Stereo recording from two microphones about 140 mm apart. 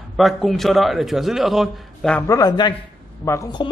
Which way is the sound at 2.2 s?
25° left (ahead or behind).